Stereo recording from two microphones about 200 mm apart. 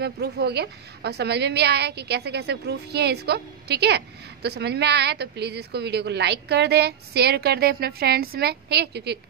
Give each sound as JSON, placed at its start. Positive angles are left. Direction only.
{"t": 0.0, "sound": "a woman's voice", "side_deg": -55}